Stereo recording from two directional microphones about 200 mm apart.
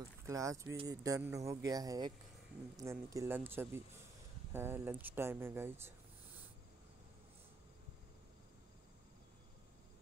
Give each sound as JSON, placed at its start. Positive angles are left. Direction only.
{"t": 0.3, "sound": "speech", "side_deg": -15}